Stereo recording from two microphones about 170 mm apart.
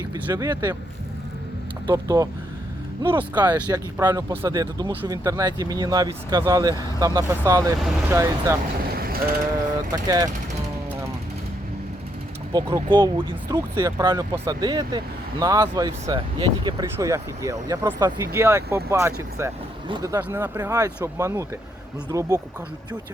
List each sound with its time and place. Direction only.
0.1 s speech: 20° right (ahead or behind)
1.9 s speech: 20° right (ahead or behind)
3.5 s speech: 10° right (ahead or behind)
9.0 s mechanisms: 60° right (ahead or behind)
9.9 s speech: 20° right (ahead or behind)
12.5 s speech: 25° right (ahead or behind)